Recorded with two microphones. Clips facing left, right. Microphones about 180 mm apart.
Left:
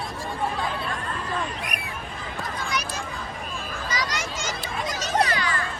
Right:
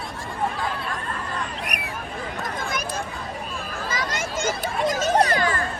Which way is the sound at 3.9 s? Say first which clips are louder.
Right 2 dB; 50° right (ahead or behind).